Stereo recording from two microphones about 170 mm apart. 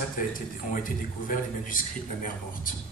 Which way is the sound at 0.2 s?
55° left (ahead or behind).